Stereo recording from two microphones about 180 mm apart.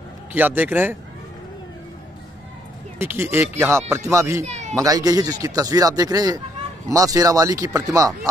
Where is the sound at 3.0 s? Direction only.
15° right (ahead or behind).